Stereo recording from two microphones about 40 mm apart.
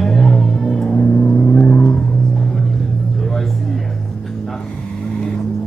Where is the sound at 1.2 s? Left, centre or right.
Left.